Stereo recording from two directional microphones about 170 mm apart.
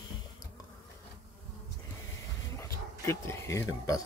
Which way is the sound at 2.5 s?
15° left (ahead or behind).